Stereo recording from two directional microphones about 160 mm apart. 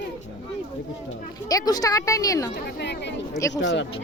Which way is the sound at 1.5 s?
25° left (ahead or behind).